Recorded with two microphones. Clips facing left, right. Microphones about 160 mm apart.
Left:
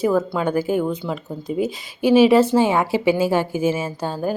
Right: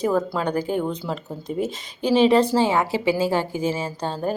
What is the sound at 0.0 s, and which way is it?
A woman's voice, centre (ahead or behind).